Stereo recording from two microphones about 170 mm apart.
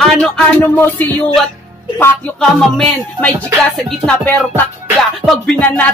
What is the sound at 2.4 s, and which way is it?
Speech, 5° left (ahead or behind).